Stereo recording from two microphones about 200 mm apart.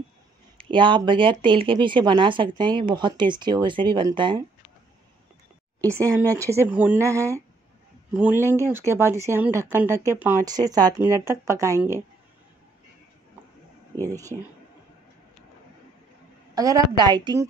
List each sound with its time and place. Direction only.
0.6 s speech: 25° right (ahead or behind)
6.3 s a man's voice: 15° right (ahead or behind)
14.0 s speech: 15° right (ahead or behind)
16.5 s speech: 20° right (ahead or behind)